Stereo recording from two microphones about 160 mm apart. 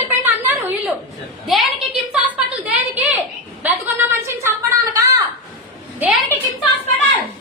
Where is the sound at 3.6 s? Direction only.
10° right (ahead or behind).